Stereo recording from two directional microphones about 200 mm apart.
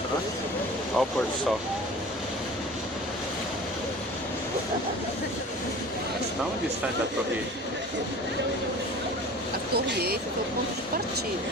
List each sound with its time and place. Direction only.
1.0 s speech: 5° left (ahead or behind)
9.7 s speech: 50° right (ahead or behind)